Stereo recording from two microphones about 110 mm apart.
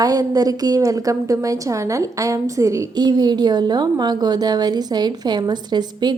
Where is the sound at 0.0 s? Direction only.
35° right (ahead or behind).